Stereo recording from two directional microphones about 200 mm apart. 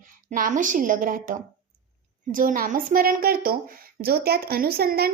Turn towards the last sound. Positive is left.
turn(degrees=-50)  # may be behind; listen again after turning